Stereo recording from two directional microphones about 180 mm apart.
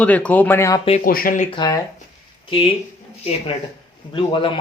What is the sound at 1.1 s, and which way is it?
Speech, 55° left (ahead or behind).